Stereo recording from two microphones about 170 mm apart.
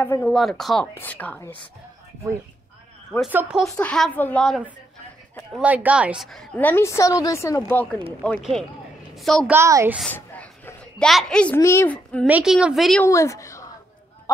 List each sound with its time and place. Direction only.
0.0 s a woman's voice: 10° left (ahead or behind)
0.4 s a woman's voice: centre (ahead or behind)
3.3 s speech: 10° right (ahead or behind)
3.7 s a woman's voice: 5° left (ahead or behind)
5.5 s a woman's voice: 10° right (ahead or behind)
9.5 s speech: 15° right (ahead or behind)
9.9 s a sound: 10° left (ahead or behind)
11.1 s a woman's voice: centre (ahead or behind)
12.3 s a woman's voice: 5° right (ahead or behind)
13.0 s a woman's voice: 15° left (ahead or behind)